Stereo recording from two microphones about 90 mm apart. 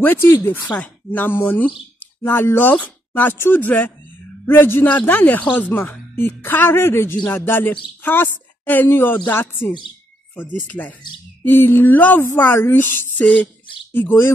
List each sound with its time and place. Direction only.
0.0 s speech: 25° left (ahead or behind)